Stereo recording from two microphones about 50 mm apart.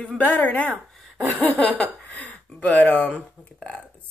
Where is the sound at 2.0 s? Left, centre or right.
Left.